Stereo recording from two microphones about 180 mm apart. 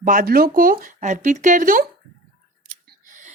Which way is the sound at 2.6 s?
45° right (ahead or behind).